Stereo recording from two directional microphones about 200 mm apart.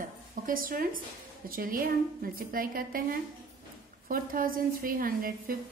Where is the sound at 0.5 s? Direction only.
45° right (ahead or behind).